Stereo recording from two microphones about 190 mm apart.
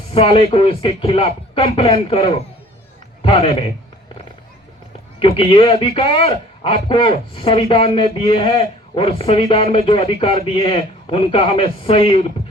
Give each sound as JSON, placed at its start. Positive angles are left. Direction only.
{"t": 0.1, "sound": "a man's voice", "side_deg": 30}
{"t": 5.2, "sound": "a man's voice", "side_deg": 30}